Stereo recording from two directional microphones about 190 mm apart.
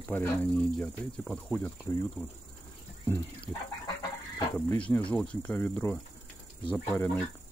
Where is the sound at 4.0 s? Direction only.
20° left (ahead or behind).